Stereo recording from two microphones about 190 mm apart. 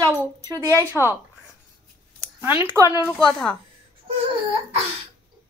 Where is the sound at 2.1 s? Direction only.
10° right (ahead or behind).